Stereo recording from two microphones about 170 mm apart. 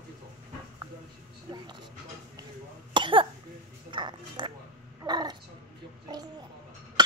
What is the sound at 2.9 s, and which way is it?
Cough, 30° right (ahead or behind).